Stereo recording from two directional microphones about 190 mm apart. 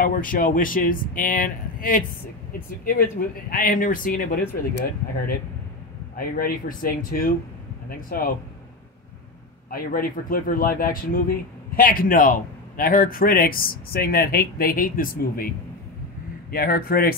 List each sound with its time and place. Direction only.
0.0 s speech: 45° left (ahead or behind)
3.4 s speech: 45° left (ahead or behind)
9.7 s speech: 50° left (ahead or behind)